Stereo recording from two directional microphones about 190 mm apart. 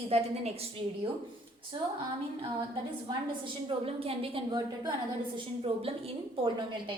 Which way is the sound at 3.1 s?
25° right (ahead or behind).